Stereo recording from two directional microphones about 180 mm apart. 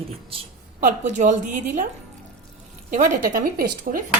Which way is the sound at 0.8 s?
45° right (ahead or behind).